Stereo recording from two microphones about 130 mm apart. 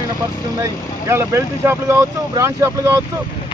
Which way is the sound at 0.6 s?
20° right (ahead or behind).